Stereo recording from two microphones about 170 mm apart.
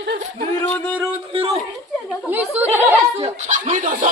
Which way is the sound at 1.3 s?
35° right (ahead or behind).